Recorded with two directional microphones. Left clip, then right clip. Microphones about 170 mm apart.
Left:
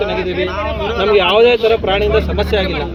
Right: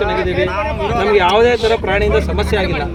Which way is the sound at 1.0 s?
55° right (ahead or behind).